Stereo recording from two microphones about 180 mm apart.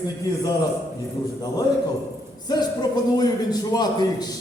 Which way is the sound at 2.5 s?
25° left (ahead or behind).